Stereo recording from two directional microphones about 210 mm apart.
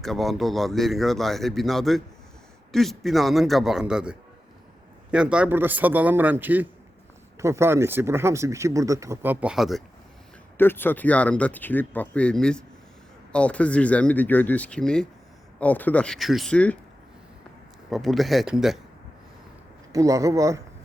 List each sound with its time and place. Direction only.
0.0 s speech: centre (ahead or behind)
10.6 s speech: 10° left (ahead or behind)
17.9 s speech: centre (ahead or behind)
19.9 s speech: 15° right (ahead or behind)